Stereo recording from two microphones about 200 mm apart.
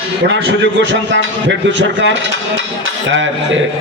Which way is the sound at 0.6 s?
65° right (ahead or behind).